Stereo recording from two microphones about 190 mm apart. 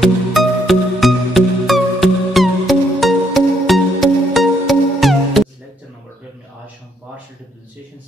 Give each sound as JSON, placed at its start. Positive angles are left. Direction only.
{"t": 0.0, "sound": "music", "side_deg": 0}